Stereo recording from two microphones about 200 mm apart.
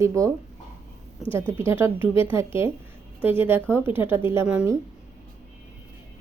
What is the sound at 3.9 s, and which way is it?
Speech, 10° right (ahead or behind).